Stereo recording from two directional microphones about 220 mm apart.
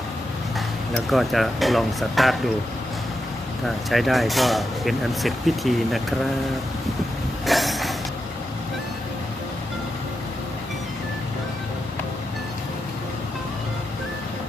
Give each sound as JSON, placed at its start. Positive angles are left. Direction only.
{"t": 0.9, "sound": "speech", "side_deg": 0}
{"t": 3.8, "sound": "speech", "side_deg": 0}
{"t": 7.4, "sound": "train", "side_deg": 0}